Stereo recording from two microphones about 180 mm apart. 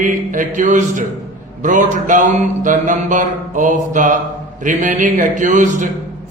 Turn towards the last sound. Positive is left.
turn(degrees=-45)  # may be behind; listen again after turning